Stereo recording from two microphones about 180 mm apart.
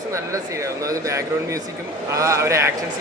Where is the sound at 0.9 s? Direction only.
20° right (ahead or behind).